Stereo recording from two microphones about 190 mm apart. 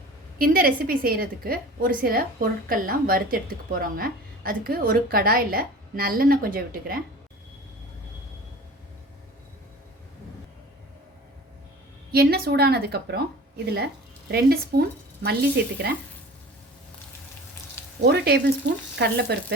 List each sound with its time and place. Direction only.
0.3 s a woman's voice: 50° right (ahead or behind)
12.1 s speech: 55° right (ahead or behind)
18.0 s speech: 60° right (ahead or behind)